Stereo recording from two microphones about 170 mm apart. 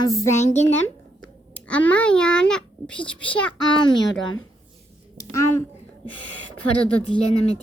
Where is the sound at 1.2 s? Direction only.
10° left (ahead or behind).